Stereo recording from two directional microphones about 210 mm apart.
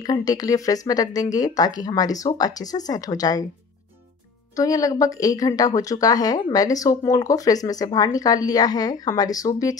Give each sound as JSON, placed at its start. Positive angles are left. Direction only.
{"t": 0.0, "sound": "speech", "side_deg": 20}
{"t": 4.6, "sound": "speech", "side_deg": 15}